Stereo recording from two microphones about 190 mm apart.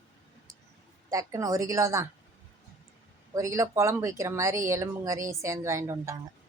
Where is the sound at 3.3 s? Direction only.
15° right (ahead or behind).